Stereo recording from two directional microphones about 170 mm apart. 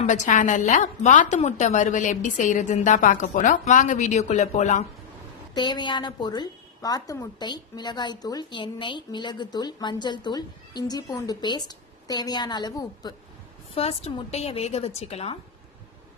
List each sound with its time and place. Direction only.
0.0 s a woman's voice: 45° left (ahead or behind)
5.5 s a woman's voice: 25° left (ahead or behind)
13.7 s a woman's voice: 35° left (ahead or behind)